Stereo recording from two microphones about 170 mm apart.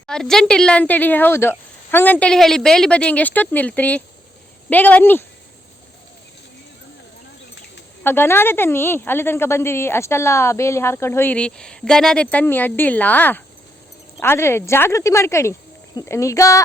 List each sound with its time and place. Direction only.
0.1 s a woman's voice: 5° left (ahead or behind)
8.0 s a woman's voice: 15° left (ahead or behind)